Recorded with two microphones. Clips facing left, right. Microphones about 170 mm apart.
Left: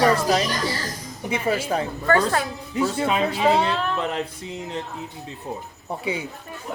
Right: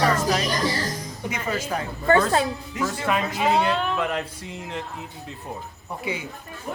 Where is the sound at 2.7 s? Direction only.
30° left (ahead or behind).